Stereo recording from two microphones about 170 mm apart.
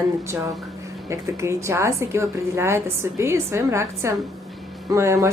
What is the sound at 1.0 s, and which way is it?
A woman's voice, 15° right (ahead or behind).